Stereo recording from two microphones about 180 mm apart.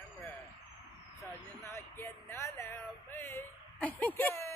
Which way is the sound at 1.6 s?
15° left (ahead or behind).